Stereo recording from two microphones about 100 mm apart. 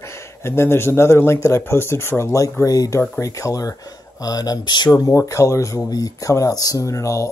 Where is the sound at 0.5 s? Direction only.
25° left (ahead or behind); by 4.9 s 50° left (ahead or behind).